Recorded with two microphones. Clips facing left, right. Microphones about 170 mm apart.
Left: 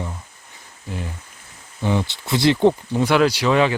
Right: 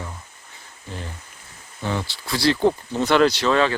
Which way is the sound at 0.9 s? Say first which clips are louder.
Left 4 dB; 10° left (ahead or behind).